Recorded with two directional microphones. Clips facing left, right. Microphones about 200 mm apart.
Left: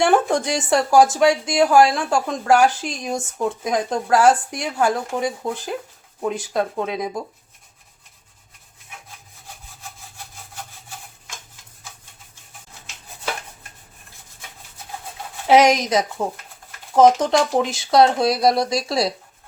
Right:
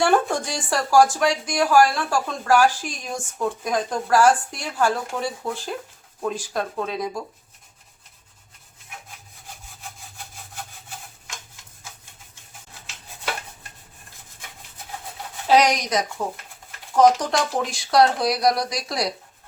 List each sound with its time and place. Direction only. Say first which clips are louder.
0.0 s speech: left 3 dB; 20° left (ahead or behind)
15.4 s speech: left 4 dB; 25° left (ahead or behind)